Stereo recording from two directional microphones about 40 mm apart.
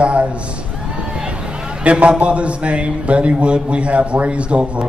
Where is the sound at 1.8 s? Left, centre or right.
Right.